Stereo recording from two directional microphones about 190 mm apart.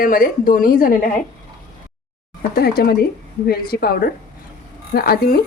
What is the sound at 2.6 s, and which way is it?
A woman's voice, 50° left (ahead or behind).